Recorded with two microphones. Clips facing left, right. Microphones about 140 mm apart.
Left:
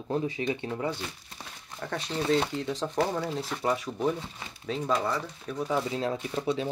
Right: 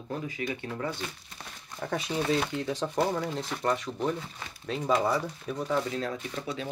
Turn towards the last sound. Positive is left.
turn(degrees=30)  # may be behind; listen again after turning